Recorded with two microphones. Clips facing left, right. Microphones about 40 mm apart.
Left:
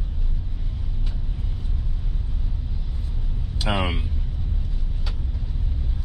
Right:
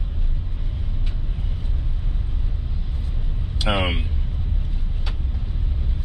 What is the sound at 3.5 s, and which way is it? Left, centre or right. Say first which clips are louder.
Speech: right 2 dB; right.